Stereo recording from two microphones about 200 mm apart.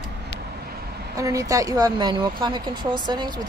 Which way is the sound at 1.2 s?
15° right (ahead or behind).